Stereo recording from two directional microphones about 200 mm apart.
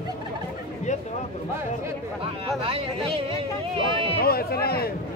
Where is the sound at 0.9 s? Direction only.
35° left (ahead or behind).